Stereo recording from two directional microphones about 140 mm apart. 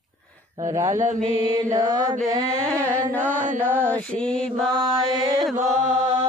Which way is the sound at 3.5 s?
15° right (ahead or behind).